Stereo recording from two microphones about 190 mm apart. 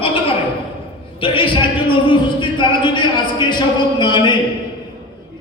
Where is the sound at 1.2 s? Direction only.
25° left (ahead or behind).